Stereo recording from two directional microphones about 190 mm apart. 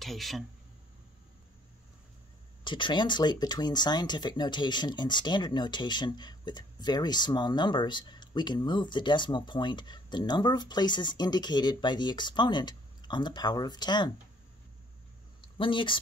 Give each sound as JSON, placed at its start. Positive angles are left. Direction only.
{"t": 0.0, "sound": "speech", "side_deg": 0}
{"t": 2.6, "sound": "speech", "side_deg": 25}
{"t": 15.5, "sound": "speech", "side_deg": 25}